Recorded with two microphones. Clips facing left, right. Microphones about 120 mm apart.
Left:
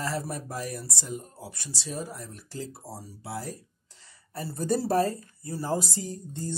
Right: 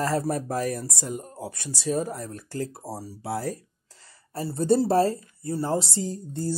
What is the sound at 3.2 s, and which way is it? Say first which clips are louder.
Speech: right 7 dB; 85° right.